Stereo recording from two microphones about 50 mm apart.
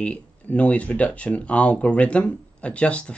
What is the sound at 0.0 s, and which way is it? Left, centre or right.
Speech, left.